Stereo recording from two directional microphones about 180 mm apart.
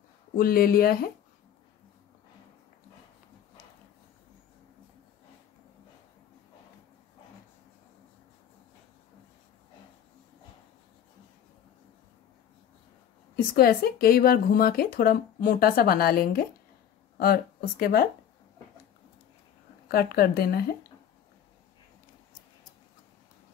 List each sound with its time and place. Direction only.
0.4 s speech: 55° left (ahead or behind)
13.6 s speech: 55° left (ahead or behind)
19.9 s speech: 60° left (ahead or behind)